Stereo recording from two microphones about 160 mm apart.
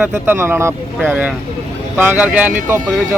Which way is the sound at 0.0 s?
15° right (ahead or behind).